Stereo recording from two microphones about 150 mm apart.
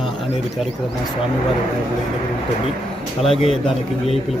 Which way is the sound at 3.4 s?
40° left (ahead or behind).